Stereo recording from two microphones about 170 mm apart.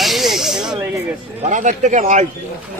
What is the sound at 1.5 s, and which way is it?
Speech, 45° right (ahead or behind).